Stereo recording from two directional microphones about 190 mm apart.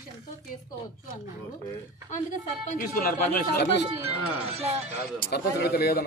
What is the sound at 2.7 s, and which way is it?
Speech, 50° left (ahead or behind).